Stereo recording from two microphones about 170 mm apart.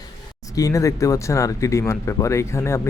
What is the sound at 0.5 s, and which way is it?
Speech, 20° left (ahead or behind).